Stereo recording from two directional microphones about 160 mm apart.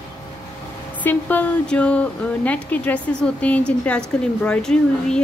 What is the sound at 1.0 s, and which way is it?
A woman's voice, 10° left (ahead or behind).